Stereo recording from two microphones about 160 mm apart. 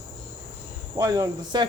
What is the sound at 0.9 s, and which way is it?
Speech, 20° right (ahead or behind).